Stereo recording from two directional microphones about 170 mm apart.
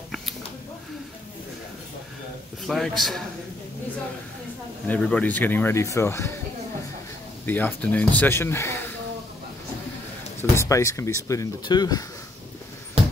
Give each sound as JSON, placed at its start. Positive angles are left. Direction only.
{"t": 2.6, "sound": "a man's voice", "side_deg": 0}
{"t": 4.8, "sound": "speech", "side_deg": 10}
{"t": 7.4, "sound": "speech", "side_deg": 10}
{"t": 10.5, "sound": "speech", "side_deg": 15}